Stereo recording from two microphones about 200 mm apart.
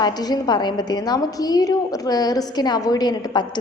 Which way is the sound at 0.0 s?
20° left (ahead or behind).